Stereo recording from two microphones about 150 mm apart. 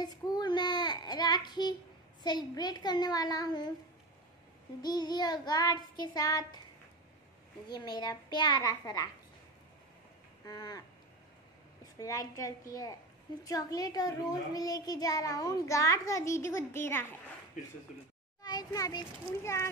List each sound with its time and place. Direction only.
0.0 s child singing: 25° left (ahead or behind)
2.2 s a child's voice: 30° left (ahead or behind)
4.8 s a child's voice: 25° left (ahead or behind)
7.6 s a child's voice: 30° left (ahead or behind)
10.4 s a child's voice: 25° left (ahead or behind)
12.0 s a child's voice: 20° left (ahead or behind)
17.6 s speech: 60° left (ahead or behind)
18.4 s a child's voice: 25° left (ahead or behind)